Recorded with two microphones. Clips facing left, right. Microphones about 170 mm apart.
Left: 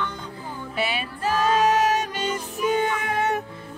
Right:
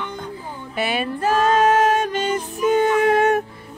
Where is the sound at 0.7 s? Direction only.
50° right (ahead or behind).